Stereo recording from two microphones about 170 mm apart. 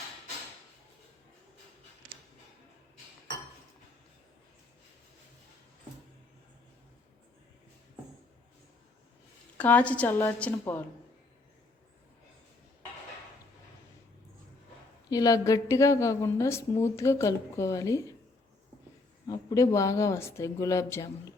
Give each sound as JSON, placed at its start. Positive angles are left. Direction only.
{"t": 9.6, "sound": "a woman's voice", "side_deg": 10}
{"t": 15.1, "sound": "a woman's voice", "side_deg": 20}
{"t": 19.3, "sound": "a woman's voice", "side_deg": 20}